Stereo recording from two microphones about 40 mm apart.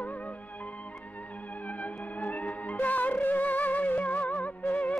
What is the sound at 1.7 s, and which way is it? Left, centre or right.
Theremin, left.